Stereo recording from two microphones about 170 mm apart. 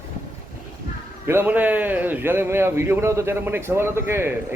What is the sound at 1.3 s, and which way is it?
A man's voice, 10° right (ahead or behind).